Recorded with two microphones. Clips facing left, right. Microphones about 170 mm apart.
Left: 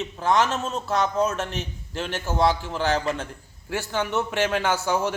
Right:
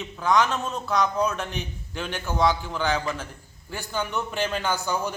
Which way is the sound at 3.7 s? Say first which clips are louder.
Left 4 dB; 80° left.